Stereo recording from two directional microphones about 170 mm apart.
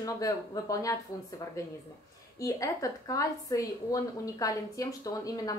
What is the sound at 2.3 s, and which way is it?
A woman's voice, 20° left (ahead or behind).